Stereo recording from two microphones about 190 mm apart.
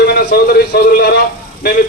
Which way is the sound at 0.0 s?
55° left (ahead or behind).